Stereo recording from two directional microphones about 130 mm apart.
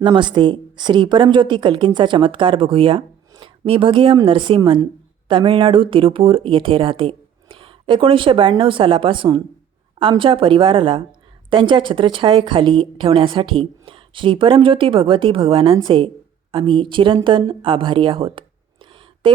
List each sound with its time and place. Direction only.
0.0 s a woman's voice: 35° right (ahead or behind)